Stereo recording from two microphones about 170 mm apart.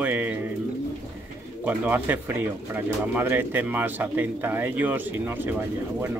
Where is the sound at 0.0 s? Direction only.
10° right (ahead or behind).